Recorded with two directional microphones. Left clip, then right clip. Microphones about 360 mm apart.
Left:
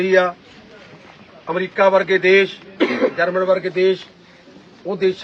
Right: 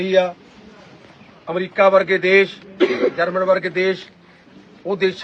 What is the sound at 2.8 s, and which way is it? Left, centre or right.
Speech, left.